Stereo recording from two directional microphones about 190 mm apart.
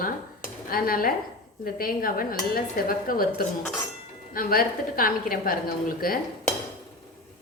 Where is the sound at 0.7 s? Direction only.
50° left (ahead or behind).